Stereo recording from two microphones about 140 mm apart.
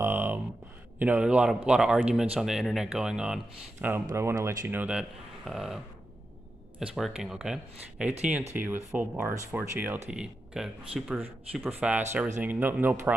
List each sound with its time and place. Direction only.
0.0 s a sound: 15° right (ahead or behind)
0.9 s speech: 10° right (ahead or behind)
4.1 s speech: 20° right (ahead or behind); by 5.8 s centre (ahead or behind)
6.8 s speech: 5° right (ahead or behind)